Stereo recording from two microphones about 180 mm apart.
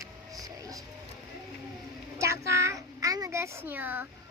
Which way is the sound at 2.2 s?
15° right (ahead or behind).